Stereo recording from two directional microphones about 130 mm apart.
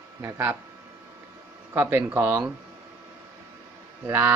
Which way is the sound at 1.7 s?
20° right (ahead or behind).